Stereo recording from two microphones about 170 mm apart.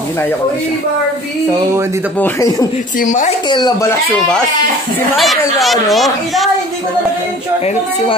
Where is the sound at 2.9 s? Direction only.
50° left (ahead or behind).